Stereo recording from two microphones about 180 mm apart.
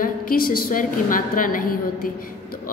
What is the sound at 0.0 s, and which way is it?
A woman's voice, 50° left (ahead or behind).